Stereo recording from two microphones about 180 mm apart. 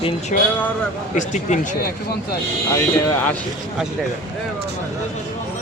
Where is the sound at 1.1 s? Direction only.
45° left (ahead or behind).